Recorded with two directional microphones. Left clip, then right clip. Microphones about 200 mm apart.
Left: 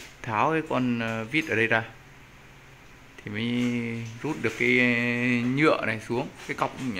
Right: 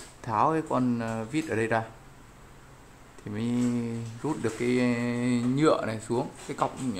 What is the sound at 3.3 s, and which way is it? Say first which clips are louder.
Speech: left 1 dB; centre (ahead or behind).